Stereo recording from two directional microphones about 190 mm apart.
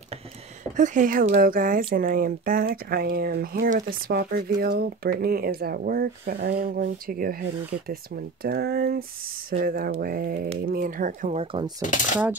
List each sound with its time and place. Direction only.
0.7 s speech: 40° right (ahead or behind)
6.5 s speech: 45° right (ahead or behind)
11.8 s speech: 40° left (ahead or behind)